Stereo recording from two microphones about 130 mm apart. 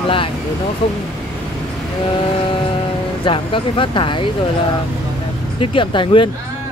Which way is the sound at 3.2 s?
40° left (ahead or behind).